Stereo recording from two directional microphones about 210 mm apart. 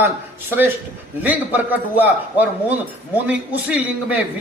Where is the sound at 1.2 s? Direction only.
10° right (ahead or behind).